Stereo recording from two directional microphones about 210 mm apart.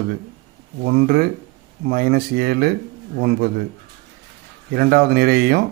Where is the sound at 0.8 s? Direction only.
50° right (ahead or behind).